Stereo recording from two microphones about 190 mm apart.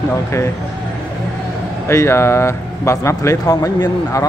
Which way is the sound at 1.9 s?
15° left (ahead or behind).